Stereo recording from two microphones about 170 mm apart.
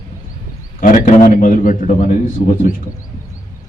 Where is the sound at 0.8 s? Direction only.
55° left (ahead or behind).